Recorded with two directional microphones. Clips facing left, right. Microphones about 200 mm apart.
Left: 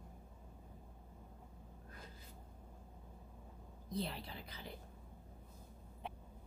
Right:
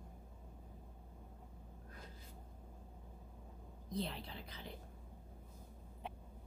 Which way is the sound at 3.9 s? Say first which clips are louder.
Even; 5° left (ahead or behind).